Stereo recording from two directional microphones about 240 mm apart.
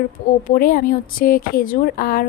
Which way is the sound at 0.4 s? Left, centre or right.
Left.